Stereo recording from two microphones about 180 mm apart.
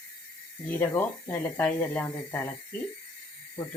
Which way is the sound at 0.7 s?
10° left (ahead or behind).